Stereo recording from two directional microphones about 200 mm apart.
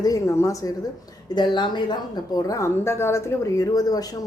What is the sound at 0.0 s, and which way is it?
A woman's voice, 15° left (ahead or behind).